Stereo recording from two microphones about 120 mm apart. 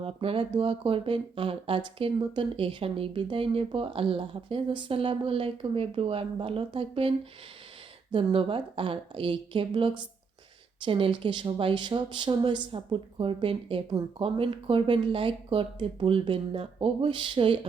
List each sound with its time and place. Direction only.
0.0 s speech: 50° right (ahead or behind)
8.1 s speech: 45° right (ahead or behind)